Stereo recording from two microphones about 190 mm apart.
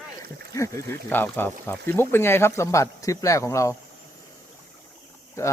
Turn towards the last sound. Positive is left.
turn(degrees=15)  # may be behind; listen again after turning